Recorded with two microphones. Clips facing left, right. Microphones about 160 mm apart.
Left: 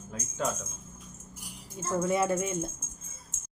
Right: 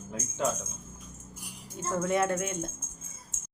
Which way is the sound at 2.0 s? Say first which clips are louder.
Left 1 dB; 5° left (ahead or behind).